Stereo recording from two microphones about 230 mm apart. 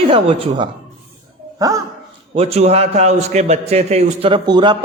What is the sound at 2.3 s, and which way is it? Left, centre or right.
A man's voice, right.